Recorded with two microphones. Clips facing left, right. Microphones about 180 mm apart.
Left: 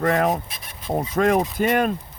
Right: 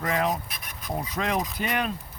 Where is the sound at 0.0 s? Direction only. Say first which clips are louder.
Left 6 dB; 50° left (ahead or behind).